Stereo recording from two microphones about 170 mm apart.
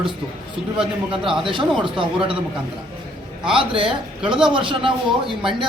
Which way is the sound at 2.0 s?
30° right (ahead or behind).